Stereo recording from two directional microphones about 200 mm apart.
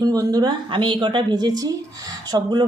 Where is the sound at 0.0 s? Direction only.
20° right (ahead or behind).